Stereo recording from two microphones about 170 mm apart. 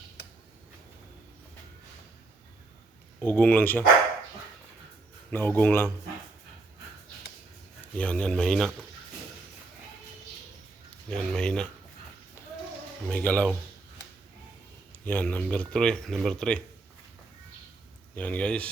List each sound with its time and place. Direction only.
3.2 s speech: 10° left (ahead or behind)
5.3 s speech: 10° left (ahead or behind)
7.9 s speech: 5° left (ahead or behind)
11.1 s speech: 5° left (ahead or behind)
13.1 s speech: 10° left (ahead or behind)
15.0 s speech: 10° left (ahead or behind)
18.1 s speech: 10° left (ahead or behind)